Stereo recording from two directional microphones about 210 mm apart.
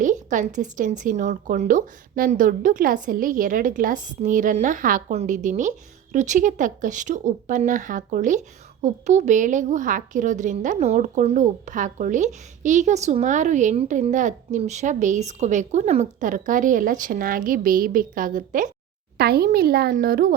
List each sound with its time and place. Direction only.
0.0 s a child's voice: 35° right (ahead or behind)